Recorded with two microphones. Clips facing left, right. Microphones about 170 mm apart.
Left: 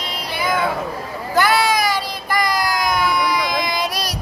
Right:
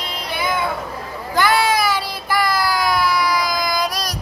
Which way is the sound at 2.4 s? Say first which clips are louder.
Right 1 dB; 15° left (ahead or behind).